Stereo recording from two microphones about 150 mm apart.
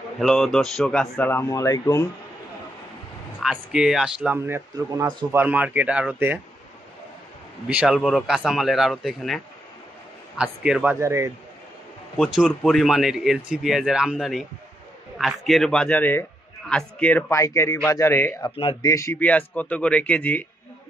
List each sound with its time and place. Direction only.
0.2 s a man's voice: 5° left (ahead or behind); by 2.0 s 20° left (ahead or behind)
3.4 s speech: 5° right (ahead or behind)
7.6 s speech: 5° right (ahead or behind)
12.2 s a man's voice: centre (ahead or behind)
17.3 s a man's voice: 20° left (ahead or behind)
18.6 s speech: 35° left (ahead or behind)
18.9 s a man's voice: 20° left (ahead or behind)